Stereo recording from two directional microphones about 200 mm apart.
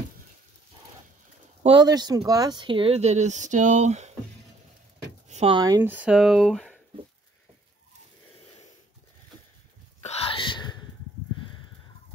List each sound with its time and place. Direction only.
1.6 s speech: 25° right (ahead or behind)
5.3 s a sound: 30° right (ahead or behind)
5.6 s speech: 20° right (ahead or behind); by 6.8 s centre (ahead or behind)
10.0 s whispering: 30° left (ahead or behind)